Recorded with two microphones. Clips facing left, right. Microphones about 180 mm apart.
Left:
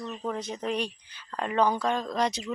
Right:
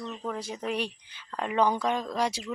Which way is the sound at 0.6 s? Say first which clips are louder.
Even; 10° right (ahead or behind).